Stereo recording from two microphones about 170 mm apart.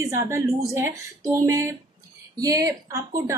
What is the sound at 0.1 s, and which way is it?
A woman's voice, 20° right (ahead or behind).